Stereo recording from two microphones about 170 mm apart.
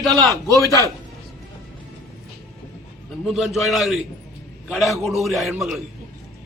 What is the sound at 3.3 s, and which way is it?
A man's voice, centre (ahead or behind).